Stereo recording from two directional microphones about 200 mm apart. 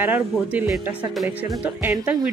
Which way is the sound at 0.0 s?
10° right (ahead or behind).